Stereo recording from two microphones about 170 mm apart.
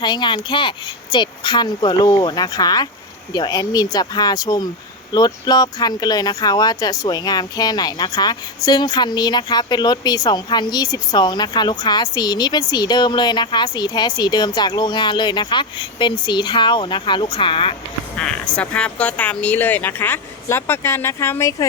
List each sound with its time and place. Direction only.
0.0 s a woman's voice: 25° left (ahead or behind)
18.2 s speech: 5° left (ahead or behind)